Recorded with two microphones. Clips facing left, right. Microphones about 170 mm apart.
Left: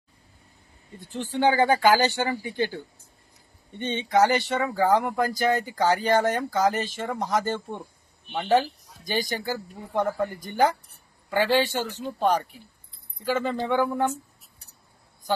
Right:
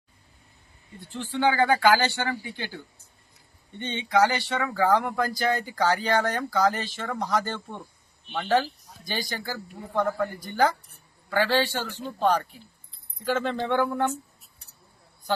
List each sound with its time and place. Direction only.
1.1 s speech: 15° left (ahead or behind)
2.6 s speech: 50° left (ahead or behind)
4.2 s speech: 20° left (ahead or behind)
5.3 s speech: 45° left (ahead or behind)
5.7 s speech: 20° left (ahead or behind)
13.2 s speech: 5° left (ahead or behind)